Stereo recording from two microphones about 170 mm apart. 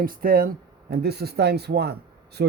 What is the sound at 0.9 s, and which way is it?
Speech, 70° right (ahead or behind).